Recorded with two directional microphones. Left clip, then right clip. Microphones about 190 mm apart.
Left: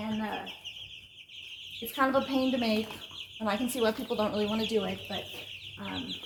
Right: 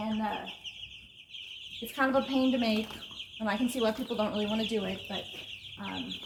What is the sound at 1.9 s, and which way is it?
Speech, 10° left (ahead or behind).